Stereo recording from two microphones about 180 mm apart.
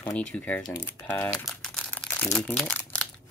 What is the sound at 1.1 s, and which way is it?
Crumpling, 5° left (ahead or behind).